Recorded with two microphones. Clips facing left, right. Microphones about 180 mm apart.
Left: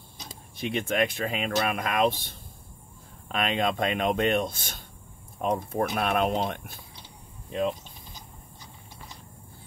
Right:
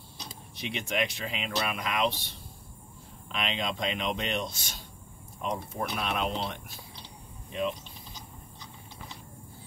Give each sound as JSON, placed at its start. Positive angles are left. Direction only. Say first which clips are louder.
{"t": 0.3, "sound": "speech", "louder": "left 7 dB", "side_deg": 50}